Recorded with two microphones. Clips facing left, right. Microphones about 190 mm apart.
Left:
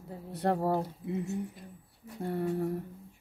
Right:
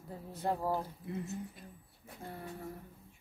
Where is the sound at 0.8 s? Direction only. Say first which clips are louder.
Left 6 dB; 25° left (ahead or behind).